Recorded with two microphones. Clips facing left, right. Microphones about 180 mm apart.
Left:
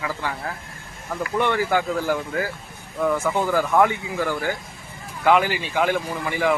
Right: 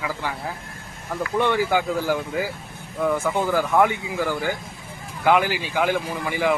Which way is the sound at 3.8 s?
15° right (ahead or behind).